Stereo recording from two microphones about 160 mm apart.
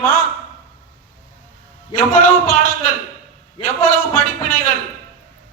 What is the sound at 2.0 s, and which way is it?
A man's voice, 60° left (ahead or behind).